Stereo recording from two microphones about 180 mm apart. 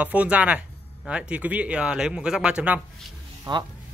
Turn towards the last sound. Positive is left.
turn(degrees=-25)  # may be behind; listen again after turning